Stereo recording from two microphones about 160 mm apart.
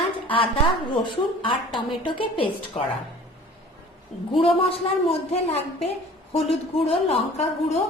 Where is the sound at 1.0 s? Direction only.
30° left (ahead or behind).